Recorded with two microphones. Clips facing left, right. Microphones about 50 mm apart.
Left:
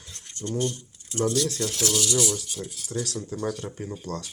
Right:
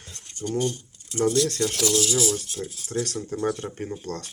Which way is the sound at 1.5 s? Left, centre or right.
Right.